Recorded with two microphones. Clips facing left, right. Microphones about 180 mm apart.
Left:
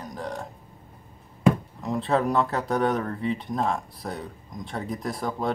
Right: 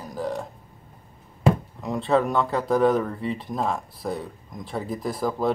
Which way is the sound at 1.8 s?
Centre (ahead or behind).